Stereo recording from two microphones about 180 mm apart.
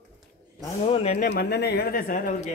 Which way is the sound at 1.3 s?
65° left (ahead or behind).